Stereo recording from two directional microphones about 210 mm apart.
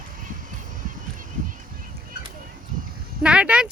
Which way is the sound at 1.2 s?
40° right (ahead or behind).